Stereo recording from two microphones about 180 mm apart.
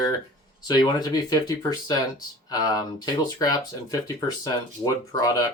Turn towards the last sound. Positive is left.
turn(degrees=20)  # may be behind; listen again after turning